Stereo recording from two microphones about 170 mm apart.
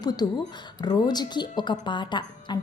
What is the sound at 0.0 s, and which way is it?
Speech, 25° left (ahead or behind).